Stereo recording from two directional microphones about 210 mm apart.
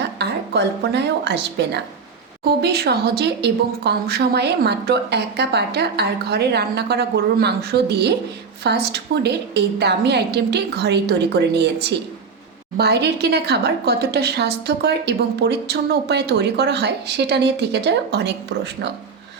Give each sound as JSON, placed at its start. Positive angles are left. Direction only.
{"t": 0.0, "sound": "a woman's voice", "side_deg": -55}